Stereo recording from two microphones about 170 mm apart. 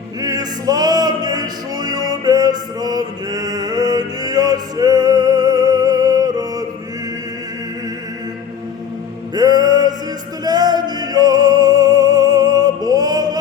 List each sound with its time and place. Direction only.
0.2 s music: 20° right (ahead or behind)
9.3 s music: 25° right (ahead or behind)